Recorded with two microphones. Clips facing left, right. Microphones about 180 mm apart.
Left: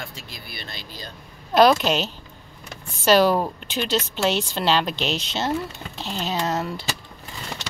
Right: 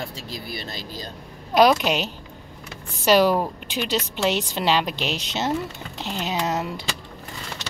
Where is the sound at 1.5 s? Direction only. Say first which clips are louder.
Left 1 dB; 10° right (ahead or behind).